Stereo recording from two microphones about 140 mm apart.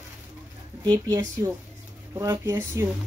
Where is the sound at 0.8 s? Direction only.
25° right (ahead or behind).